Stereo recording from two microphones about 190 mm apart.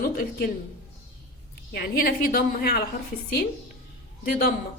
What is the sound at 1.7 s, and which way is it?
A woman's voice, 50° left (ahead or behind).